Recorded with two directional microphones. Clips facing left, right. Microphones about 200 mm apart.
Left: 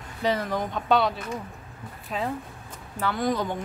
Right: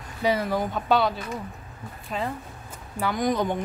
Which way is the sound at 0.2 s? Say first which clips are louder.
Right 2 dB; 10° right (ahead or behind).